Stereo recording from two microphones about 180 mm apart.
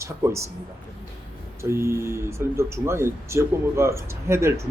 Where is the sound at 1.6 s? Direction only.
15° right (ahead or behind).